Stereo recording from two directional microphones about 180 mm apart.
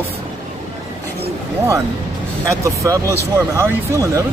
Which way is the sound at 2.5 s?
15° right (ahead or behind).